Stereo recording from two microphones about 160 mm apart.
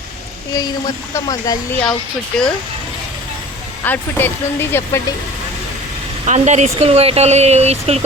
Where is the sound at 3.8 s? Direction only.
10° left (ahead or behind).